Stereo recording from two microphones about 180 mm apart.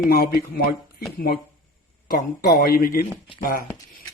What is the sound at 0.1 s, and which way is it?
Speech, 55° left (ahead or behind).